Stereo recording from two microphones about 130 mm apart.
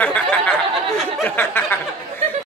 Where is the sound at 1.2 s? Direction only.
15° left (ahead or behind).